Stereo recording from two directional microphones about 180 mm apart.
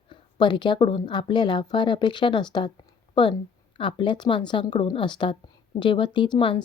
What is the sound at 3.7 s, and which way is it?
Speech, 30° left (ahead or behind).